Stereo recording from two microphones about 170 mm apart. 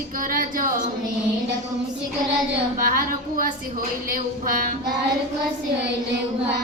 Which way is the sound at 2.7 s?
55° right (ahead or behind).